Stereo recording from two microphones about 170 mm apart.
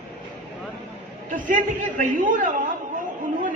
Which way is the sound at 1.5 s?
50° right (ahead or behind).